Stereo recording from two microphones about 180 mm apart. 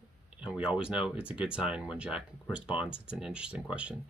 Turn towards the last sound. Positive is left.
turn(degrees=-5)  # may be behind; listen again after turning